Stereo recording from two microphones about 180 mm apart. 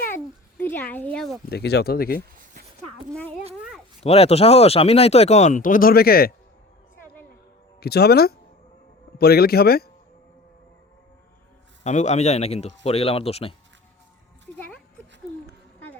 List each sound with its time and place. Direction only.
0.6 s speech: 10° left (ahead or behind)
1.5 s speech: 65° left (ahead or behind)
4.0 s speech: 35° left (ahead or behind); by 6.3 s 55° left (ahead or behind)
7.8 s speech: 60° left (ahead or behind)
11.8 s speech: 40° left (ahead or behind)